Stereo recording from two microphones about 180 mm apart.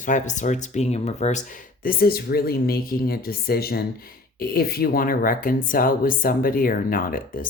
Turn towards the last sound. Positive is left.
turn(degrees=50)  # may be behind; listen again after turning